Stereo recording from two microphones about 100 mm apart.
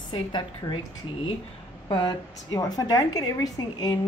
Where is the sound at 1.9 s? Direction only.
50° left (ahead or behind).